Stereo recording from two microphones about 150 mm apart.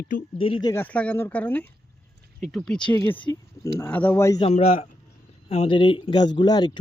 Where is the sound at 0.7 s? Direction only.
10° left (ahead or behind).